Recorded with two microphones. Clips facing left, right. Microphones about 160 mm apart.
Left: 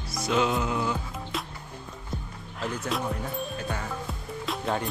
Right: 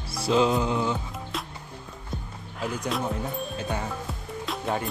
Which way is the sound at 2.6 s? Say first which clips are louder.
Right 1 dB; centre (ahead or behind).